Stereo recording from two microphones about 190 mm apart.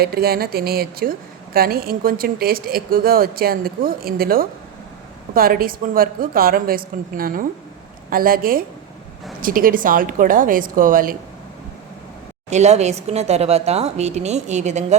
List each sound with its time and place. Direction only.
0.0 s a woman's voice: 55° right (ahead or behind)
12.5 s speech: 35° right (ahead or behind)